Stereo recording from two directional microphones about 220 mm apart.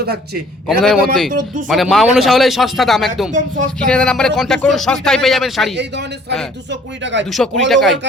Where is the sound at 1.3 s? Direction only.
40° right (ahead or behind).